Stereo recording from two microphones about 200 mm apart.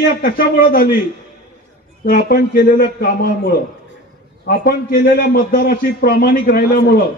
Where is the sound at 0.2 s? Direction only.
45° left (ahead or behind).